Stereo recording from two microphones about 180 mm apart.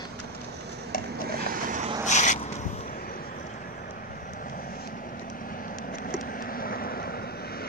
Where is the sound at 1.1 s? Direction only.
60° right (ahead or behind).